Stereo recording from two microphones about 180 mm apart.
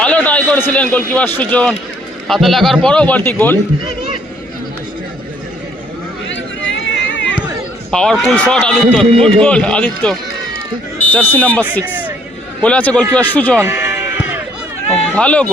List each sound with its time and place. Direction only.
0.0 s a man's voice: 5° left (ahead or behind)
6.2 s chatter: 90° left
7.9 s a man's voice: 5° left (ahead or behind)
11.9 s a sound: 10° right (ahead or behind)
12.6 s a man's voice: 5° left (ahead or behind)
13.6 s sheep: 15° right (ahead or behind)
15.1 s a man's voice: 5° left (ahead or behind)